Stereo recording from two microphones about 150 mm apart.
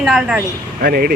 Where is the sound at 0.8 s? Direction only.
85° right.